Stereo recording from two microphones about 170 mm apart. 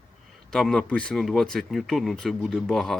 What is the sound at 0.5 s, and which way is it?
Speech, 5° left (ahead or behind).